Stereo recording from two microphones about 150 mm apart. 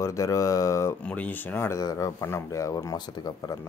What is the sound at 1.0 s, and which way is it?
Speech, 10° left (ahead or behind).